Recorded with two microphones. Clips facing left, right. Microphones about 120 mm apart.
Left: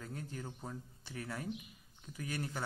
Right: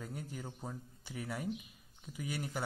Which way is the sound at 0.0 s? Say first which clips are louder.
Right 1 dB; 15° right (ahead or behind).